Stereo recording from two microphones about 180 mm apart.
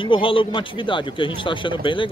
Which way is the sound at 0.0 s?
30° left (ahead or behind).